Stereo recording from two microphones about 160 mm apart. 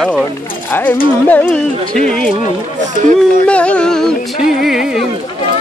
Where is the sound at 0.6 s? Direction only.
15° left (ahead or behind).